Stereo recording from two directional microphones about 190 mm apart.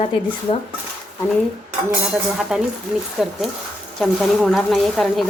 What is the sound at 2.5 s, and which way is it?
Speech, 5° right (ahead or behind).